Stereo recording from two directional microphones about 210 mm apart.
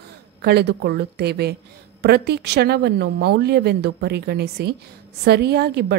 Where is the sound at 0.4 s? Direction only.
50° right (ahead or behind).